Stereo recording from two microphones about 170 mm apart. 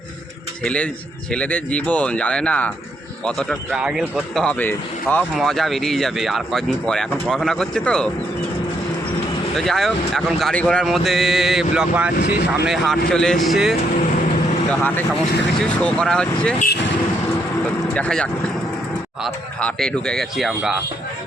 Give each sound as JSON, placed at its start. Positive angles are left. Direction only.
{"t": 0.6, "sound": "speech", "side_deg": 5}
{"t": 9.6, "sound": "speech", "side_deg": 0}
{"t": 12.2, "sound": "speech", "side_deg": 65}
{"t": 12.6, "sound": "speech", "side_deg": 0}
{"t": 14.7, "sound": "speech", "side_deg": 10}
{"t": 17.9, "sound": "speech", "side_deg": 5}